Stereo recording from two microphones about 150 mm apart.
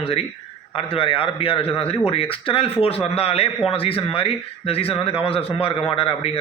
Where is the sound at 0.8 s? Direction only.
40° left (ahead or behind).